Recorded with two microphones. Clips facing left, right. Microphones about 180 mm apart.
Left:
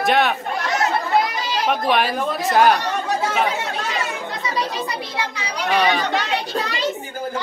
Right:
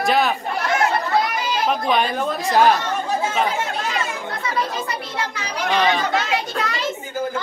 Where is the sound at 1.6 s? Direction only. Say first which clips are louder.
Left 1 dB; centre (ahead or behind).